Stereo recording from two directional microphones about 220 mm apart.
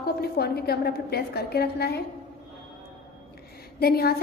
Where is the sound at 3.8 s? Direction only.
45° left (ahead or behind).